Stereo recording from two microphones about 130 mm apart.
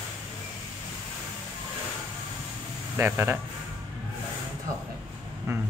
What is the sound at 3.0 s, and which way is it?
Speech, 15° right (ahead or behind).